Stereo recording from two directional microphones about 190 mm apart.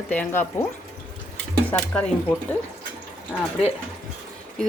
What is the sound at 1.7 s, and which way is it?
Speech, 5° left (ahead or behind).